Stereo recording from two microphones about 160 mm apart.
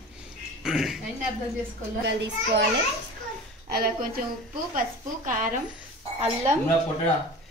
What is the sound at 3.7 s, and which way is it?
Speech, 65° right (ahead or behind).